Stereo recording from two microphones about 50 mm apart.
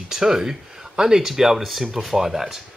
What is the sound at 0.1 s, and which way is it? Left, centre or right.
Speech, centre.